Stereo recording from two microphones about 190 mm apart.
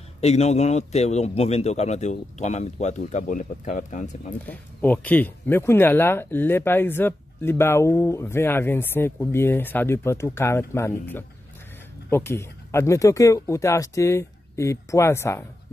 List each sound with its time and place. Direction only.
0.2 s a man's voice: 35° left (ahead or behind)
4.5 s speech: 10° left (ahead or behind)